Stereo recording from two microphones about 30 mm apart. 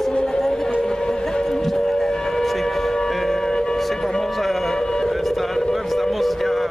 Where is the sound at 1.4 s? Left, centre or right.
Centre.